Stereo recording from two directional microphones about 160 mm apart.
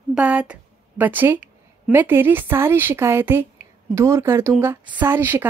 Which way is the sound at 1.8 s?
15° right (ahead or behind).